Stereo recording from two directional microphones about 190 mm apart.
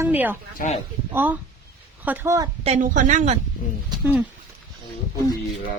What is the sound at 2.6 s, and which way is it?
Speech, 40° right (ahead or behind).